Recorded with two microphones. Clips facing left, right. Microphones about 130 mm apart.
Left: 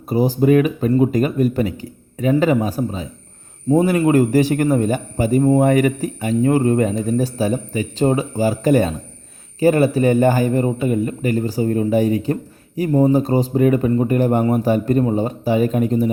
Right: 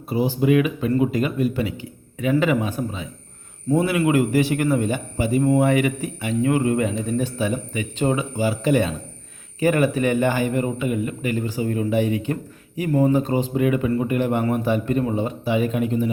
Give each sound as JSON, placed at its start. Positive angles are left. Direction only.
{"t": 0.1, "sound": "a man's voice", "side_deg": 40}